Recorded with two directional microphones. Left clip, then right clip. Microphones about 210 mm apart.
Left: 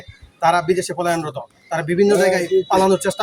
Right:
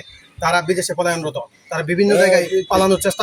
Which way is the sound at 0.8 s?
5° left (ahead or behind).